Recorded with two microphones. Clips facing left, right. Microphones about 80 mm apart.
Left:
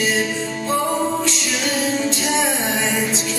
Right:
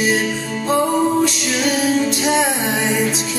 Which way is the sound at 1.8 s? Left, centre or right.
Centre.